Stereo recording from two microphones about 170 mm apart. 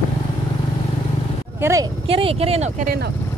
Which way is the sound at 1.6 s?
15° right (ahead or behind).